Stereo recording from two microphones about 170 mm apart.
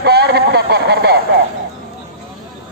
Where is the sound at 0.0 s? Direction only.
70° right (ahead or behind).